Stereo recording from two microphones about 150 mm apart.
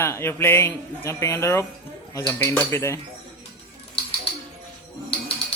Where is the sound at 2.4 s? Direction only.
15° left (ahead or behind).